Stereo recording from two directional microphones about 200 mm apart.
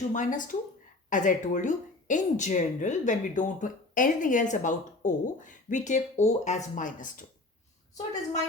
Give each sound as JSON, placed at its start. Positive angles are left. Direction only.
{"t": 0.1, "sound": "speech", "side_deg": 40}